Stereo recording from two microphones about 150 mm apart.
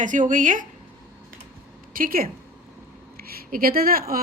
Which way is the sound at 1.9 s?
70° right (ahead or behind).